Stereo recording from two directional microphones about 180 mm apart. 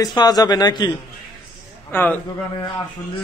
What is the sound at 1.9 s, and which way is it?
Speech, 10° left (ahead or behind).